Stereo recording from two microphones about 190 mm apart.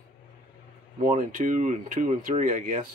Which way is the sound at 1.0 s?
40° right (ahead or behind).